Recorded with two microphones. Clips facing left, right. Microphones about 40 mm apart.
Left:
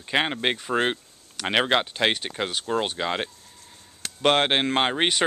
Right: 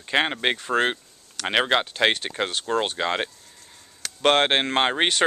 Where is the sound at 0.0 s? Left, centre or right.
Centre.